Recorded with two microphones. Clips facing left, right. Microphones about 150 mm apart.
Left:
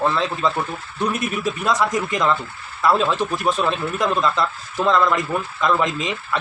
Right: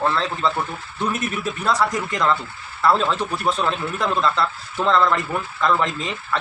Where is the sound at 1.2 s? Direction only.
15° left (ahead or behind).